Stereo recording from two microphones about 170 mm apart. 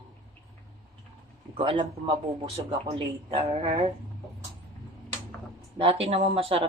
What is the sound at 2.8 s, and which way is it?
Speech, 35° right (ahead or behind).